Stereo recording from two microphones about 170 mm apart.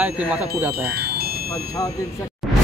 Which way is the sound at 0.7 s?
65° right (ahead or behind).